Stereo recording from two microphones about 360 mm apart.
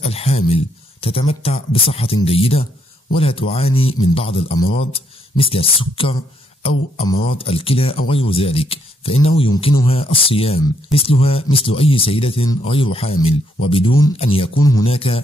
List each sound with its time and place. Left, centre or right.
0.0 s speech: centre